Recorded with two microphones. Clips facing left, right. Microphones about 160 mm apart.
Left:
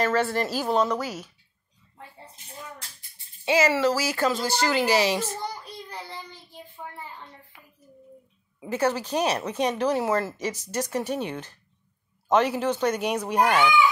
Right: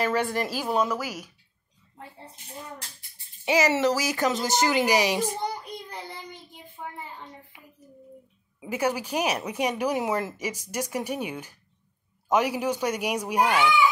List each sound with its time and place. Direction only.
0.0 s speech: 15° right (ahead or behind)
3.4 s speech: 20° right (ahead or behind)
5.9 s child singing: 20° right (ahead or behind)
8.5 s speech: 10° right (ahead or behind)